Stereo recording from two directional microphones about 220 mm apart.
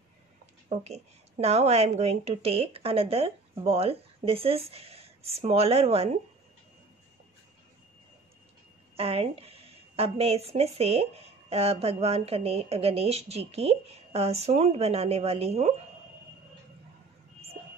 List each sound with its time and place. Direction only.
0.7 s speech: 30° right (ahead or behind)
8.9 s speech: 25° right (ahead or behind)